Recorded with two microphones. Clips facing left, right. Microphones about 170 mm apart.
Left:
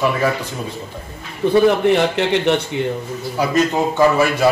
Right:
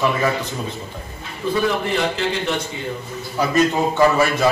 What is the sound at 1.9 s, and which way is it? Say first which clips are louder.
Speech: left 6 dB; 70° left (ahead or behind).